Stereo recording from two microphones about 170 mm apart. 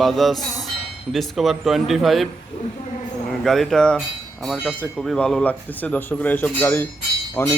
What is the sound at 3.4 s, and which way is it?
A man's voice, centre (ahead or behind).